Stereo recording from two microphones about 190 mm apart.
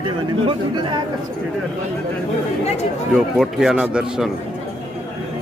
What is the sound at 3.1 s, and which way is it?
Speech, centre (ahead or behind).